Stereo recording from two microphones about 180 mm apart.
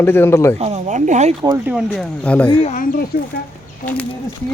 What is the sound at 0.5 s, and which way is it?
Speech, 35° right (ahead or behind).